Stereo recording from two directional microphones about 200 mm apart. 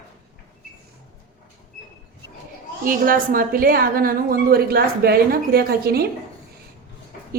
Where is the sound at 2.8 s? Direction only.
45° right (ahead or behind).